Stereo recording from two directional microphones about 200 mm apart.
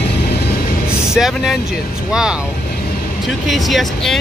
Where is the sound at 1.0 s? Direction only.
Centre (ahead or behind).